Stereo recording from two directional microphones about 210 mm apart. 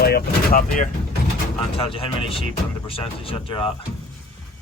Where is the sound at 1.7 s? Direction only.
25° left (ahead or behind).